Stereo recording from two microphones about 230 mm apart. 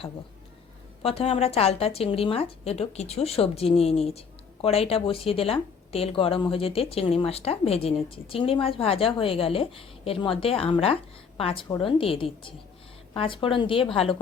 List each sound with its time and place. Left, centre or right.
1.0 s speech: left